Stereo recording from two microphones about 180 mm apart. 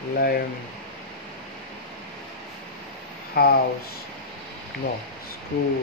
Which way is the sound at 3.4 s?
60° left (ahead or behind).